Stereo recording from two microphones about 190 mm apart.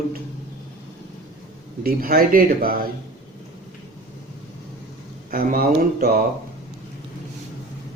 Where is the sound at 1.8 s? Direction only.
50° right (ahead or behind).